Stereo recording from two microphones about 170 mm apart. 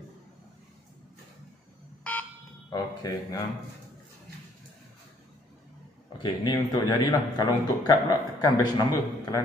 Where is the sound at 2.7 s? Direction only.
20° left (ahead or behind).